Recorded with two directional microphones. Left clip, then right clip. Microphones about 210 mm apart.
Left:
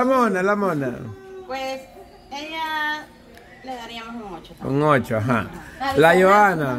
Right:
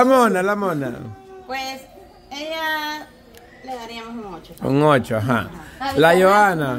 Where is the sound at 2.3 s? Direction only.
55° right (ahead or behind).